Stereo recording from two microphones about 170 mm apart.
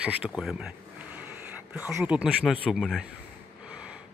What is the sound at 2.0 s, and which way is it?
Speech, 5° right (ahead or behind).